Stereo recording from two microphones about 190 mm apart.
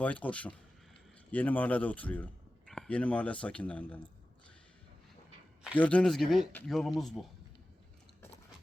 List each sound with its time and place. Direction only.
0.0 s a man's voice: 5° left (ahead or behind)
5.7 s speech: 5° left (ahead or behind)